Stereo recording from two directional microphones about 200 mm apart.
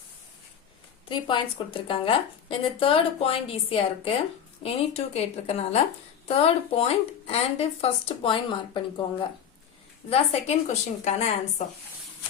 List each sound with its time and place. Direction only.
1.0 s speech: 25° left (ahead or behind)
10.1 s speech: 30° left (ahead or behind)